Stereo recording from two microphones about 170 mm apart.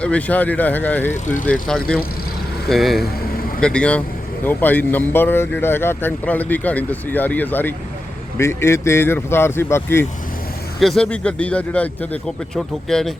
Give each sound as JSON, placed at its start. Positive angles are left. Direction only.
{"t": 0.0, "sound": "speech", "side_deg": 10}
{"t": 1.1, "sound": "speech", "side_deg": 50}
{"t": 1.6, "sound": "a man's voice", "side_deg": 5}
{"t": 10.8, "sound": "a man's voice", "side_deg": 0}